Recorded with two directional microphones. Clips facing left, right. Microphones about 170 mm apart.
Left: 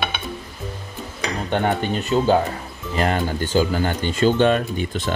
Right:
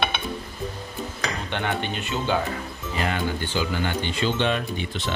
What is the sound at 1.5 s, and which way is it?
Speech, 40° left (ahead or behind).